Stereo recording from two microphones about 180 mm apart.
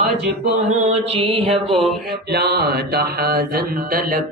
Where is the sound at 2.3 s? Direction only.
65° right (ahead or behind).